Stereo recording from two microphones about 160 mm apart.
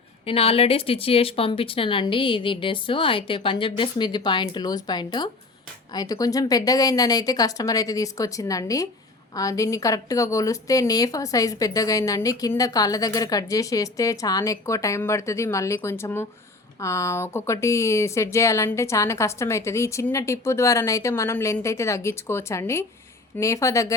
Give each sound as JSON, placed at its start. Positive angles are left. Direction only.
{"t": 0.3, "sound": "a woman's voice", "side_deg": 35}